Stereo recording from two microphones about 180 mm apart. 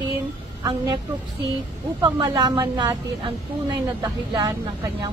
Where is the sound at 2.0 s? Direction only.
25° right (ahead or behind).